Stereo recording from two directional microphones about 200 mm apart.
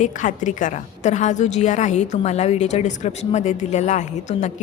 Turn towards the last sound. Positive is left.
turn(degrees=35)  # may be behind; listen again after turning